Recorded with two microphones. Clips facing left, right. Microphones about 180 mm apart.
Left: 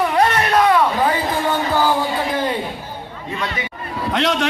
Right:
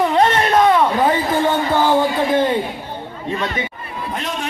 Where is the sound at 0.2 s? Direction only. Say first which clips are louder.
Right 1 dB; 25° right (ahead or behind).